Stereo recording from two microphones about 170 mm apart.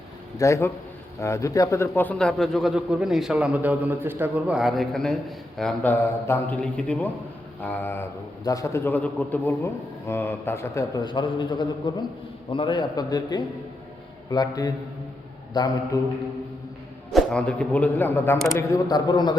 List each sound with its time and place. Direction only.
0.3 s a man's voice: 20° left (ahead or behind)
17.1 s a man's voice: 5° left (ahead or behind); by 19.4 s 25° left (ahead or behind)